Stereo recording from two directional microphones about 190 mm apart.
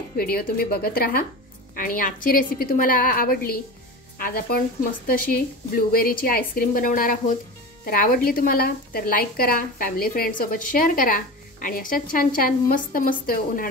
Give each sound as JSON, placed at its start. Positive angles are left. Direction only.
{"t": 0.2, "sound": "a woman's voice", "side_deg": 55}